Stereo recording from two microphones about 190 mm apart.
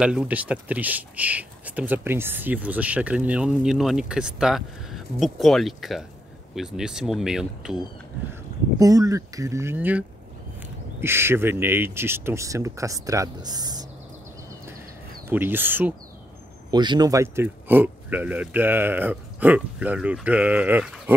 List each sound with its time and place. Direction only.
0.0 s speech: 5° right (ahead or behind)
8.7 s speech: 20° right (ahead or behind)
15.2 s speech: 10° right (ahead or behind)
16.7 s speech: 25° right (ahead or behind)